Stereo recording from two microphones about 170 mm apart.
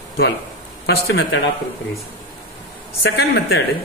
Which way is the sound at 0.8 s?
80° left.